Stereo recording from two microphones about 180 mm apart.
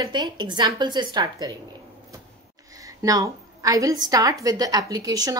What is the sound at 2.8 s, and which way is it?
A woman's voice, 20° right (ahead or behind).